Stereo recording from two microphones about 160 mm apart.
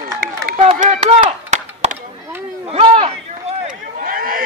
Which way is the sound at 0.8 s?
45° right (ahead or behind).